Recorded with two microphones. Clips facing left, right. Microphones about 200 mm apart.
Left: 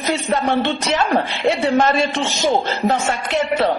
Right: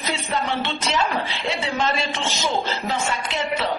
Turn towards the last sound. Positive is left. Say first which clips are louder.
# left 7 dB
turn(degrees=60)  # may be behind; listen again after turning